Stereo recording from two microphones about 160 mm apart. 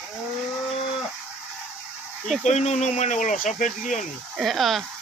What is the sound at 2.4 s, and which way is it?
Speech, 45° left (ahead or behind).